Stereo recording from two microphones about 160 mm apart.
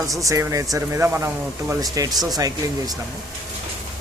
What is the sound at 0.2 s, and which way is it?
Speech, 20° right (ahead or behind).